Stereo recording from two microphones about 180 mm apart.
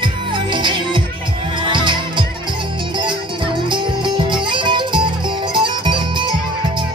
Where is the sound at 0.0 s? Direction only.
25° right (ahead or behind).